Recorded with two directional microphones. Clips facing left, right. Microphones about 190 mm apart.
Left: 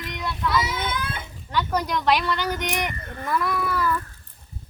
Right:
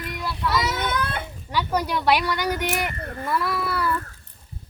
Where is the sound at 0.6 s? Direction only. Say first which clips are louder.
Right 3 dB; 65° right (ahead or behind).